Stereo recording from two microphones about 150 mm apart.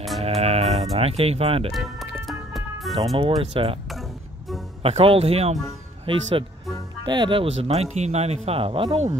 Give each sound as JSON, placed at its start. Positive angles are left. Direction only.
{"t": 0.4, "sound": "music", "side_deg": -45}
{"t": 0.9, "sound": "a man's voice", "side_deg": -40}
{"t": 1.7, "sound": "speech", "side_deg": 0}
{"t": 2.2, "sound": "music", "side_deg": 0}
{"t": 3.2, "sound": "a man's voice", "side_deg": -40}
{"t": 4.8, "sound": "a man's voice", "side_deg": -40}